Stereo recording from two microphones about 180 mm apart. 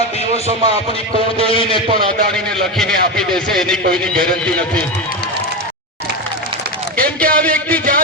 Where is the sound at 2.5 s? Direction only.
Centre (ahead or behind).